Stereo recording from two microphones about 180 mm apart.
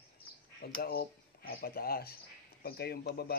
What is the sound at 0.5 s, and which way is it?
Speech, 60° left (ahead or behind).